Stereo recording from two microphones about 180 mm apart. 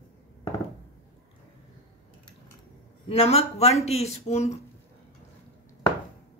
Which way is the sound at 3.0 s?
35° left (ahead or behind).